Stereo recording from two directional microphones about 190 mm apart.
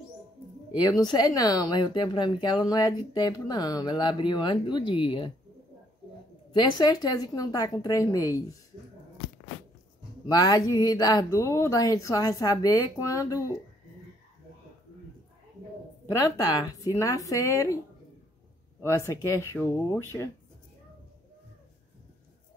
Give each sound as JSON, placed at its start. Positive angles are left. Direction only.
{"t": 1.0, "sound": "speech", "side_deg": 20}
{"t": 6.5, "sound": "speech", "side_deg": 25}
{"t": 10.2, "sound": "speech", "side_deg": 20}
{"t": 16.1, "sound": "speech", "side_deg": 20}
{"t": 18.8, "sound": "speech", "side_deg": 15}